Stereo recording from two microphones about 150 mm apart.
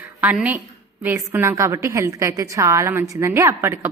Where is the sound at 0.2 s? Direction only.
10° right (ahead or behind).